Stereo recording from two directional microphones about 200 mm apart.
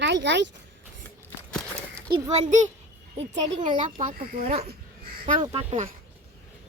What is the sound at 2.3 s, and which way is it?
Speech, 35° right (ahead or behind).